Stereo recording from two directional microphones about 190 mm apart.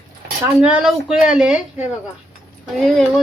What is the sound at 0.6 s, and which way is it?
Speech, 5° right (ahead or behind).